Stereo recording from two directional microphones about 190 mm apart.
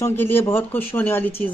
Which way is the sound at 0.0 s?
10° left (ahead or behind).